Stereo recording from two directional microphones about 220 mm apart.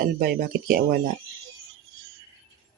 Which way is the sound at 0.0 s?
40° right (ahead or behind).